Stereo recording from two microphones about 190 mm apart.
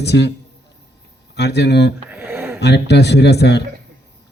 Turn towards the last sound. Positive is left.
turn(degrees=60)  # may be behind; listen again after turning